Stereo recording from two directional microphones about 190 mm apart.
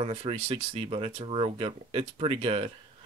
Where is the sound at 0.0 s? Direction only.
30° right (ahead or behind).